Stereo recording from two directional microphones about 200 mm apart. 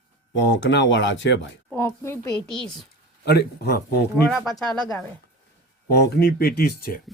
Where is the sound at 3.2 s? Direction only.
55° left (ahead or behind).